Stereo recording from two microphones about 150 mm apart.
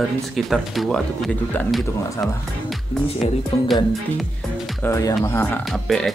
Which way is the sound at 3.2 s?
45° left (ahead or behind).